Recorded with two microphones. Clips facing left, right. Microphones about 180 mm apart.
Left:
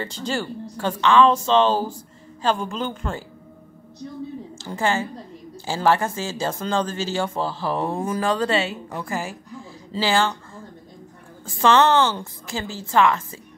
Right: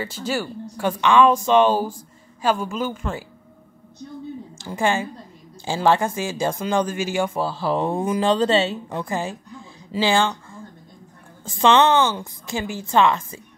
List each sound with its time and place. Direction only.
0.0 s speech: 5° right (ahead or behind)
4.6 s speech: 15° right (ahead or behind)
11.4 s speech: 20° right (ahead or behind)